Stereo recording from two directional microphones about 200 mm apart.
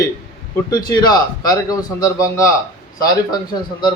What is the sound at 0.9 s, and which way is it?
A man's voice, 20° left (ahead or behind).